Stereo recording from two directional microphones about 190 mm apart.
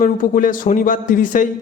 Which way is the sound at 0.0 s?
45° left (ahead or behind).